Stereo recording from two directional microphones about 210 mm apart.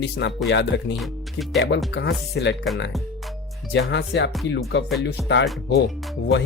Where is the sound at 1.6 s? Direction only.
55° left (ahead or behind).